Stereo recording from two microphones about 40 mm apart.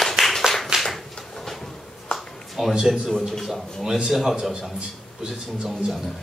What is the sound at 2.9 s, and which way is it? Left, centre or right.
Speech, centre.